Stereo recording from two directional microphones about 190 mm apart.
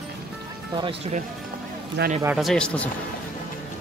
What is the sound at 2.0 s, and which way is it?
Speech, 60° right (ahead or behind).